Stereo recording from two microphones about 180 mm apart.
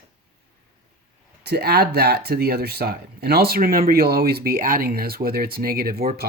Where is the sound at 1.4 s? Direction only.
65° right (ahead or behind).